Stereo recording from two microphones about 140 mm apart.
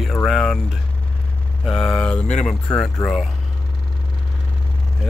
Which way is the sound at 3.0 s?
25° left (ahead or behind).